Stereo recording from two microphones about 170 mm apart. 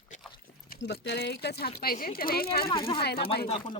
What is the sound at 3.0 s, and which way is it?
Speech, 65° left (ahead or behind).